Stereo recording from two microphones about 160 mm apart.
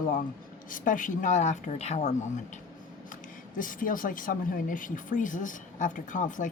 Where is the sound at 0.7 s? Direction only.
55° left (ahead or behind).